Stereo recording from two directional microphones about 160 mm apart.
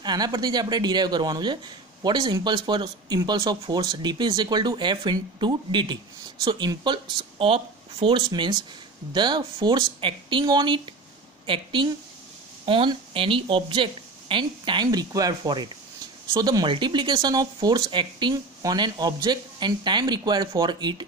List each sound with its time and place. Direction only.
0.0 s speech: 25° right (ahead or behind)